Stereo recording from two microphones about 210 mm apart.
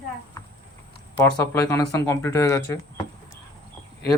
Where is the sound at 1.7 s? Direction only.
15° left (ahead or behind).